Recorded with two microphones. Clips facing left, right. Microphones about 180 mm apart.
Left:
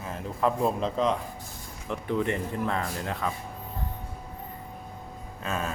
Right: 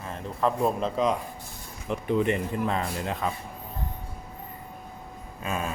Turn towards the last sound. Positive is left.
turn(degrees=-10)  # may be behind; listen again after turning